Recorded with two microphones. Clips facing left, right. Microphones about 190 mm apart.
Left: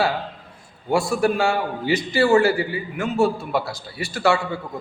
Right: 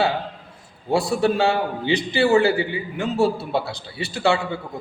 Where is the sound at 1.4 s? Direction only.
20° right (ahead or behind).